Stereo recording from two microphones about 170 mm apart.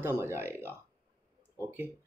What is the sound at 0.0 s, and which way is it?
Speech, 15° right (ahead or behind).